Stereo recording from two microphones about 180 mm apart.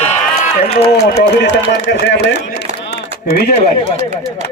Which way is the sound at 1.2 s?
70° left (ahead or behind).